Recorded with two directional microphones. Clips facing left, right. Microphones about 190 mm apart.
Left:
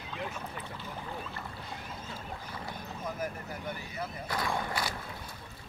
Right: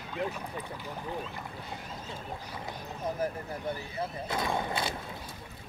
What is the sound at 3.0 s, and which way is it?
Speech, 30° right (ahead or behind).